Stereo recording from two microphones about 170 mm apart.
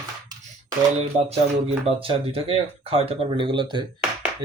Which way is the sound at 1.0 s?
40° right (ahead or behind).